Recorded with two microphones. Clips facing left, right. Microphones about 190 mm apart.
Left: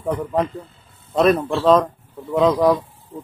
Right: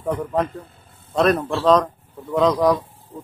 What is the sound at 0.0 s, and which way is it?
Speech, 5° left (ahead or behind).